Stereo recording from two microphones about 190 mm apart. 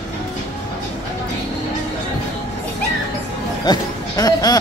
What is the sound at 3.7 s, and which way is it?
Music, 20° left (ahead or behind).